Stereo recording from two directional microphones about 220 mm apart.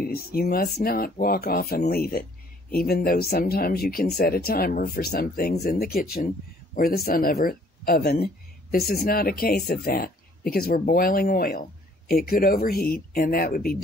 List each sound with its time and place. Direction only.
0.0 s speech: 45° left (ahead or behind)